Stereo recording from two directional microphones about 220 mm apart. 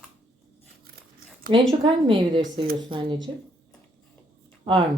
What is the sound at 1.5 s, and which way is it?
Speech, 25° right (ahead or behind).